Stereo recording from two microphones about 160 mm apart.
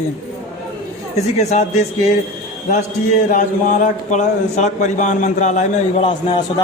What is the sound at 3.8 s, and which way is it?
A man's voice, 50° left (ahead or behind).